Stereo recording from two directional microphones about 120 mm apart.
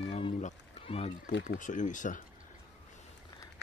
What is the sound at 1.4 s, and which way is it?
Speech, 90° left.